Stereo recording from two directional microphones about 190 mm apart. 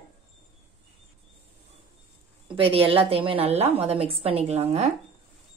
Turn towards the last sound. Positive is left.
turn(degrees=-35)  # may be behind; listen again after turning